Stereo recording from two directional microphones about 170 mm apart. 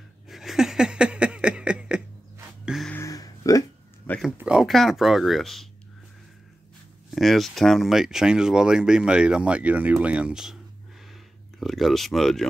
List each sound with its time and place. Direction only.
0.3 s a sound: centre (ahead or behind)
2.6 s music: 5° right (ahead or behind)
2.9 s music: 20° left (ahead or behind)
4.1 s a sound: 10° left (ahead or behind)
4.4 s speech: 5° right (ahead or behind)
7.2 s speech: centre (ahead or behind)
11.6 s speech: centre (ahead or behind)